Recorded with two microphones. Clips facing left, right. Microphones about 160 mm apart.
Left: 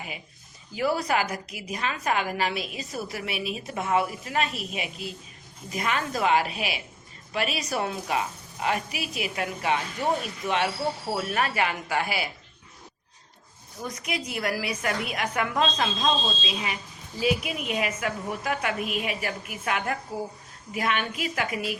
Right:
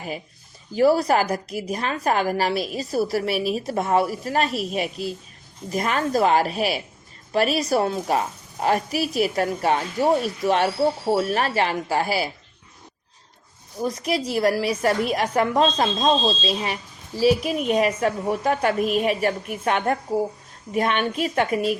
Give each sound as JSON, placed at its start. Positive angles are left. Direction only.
{"t": 0.7, "sound": "a woman's voice", "side_deg": -40}
{"t": 13.8, "sound": "a woman's voice", "side_deg": -35}